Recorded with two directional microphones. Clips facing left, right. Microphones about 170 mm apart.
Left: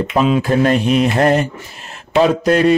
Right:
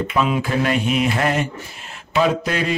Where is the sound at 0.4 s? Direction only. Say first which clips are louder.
Left 6 dB; 45° left (ahead or behind).